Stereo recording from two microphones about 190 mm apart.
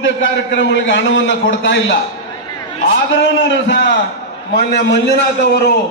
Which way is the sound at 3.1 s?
70° left (ahead or behind).